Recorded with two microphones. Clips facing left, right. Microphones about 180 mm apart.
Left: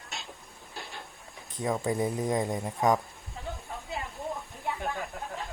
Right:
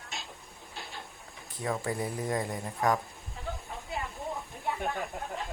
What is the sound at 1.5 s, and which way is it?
Speech, 20° left (ahead or behind).